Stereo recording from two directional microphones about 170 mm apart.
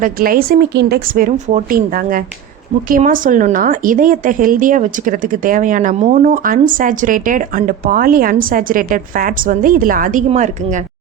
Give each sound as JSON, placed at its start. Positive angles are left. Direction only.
{"t": 0.0, "sound": "a woman's voice", "side_deg": -60}